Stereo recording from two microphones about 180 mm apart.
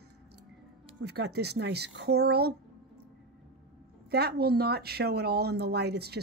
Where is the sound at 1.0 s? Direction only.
65° right (ahead or behind).